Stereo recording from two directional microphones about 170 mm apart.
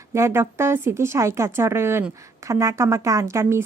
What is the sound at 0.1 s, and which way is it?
Speech, 15° right (ahead or behind).